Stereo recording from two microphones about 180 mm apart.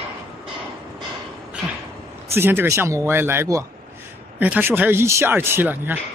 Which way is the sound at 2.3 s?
10° right (ahead or behind).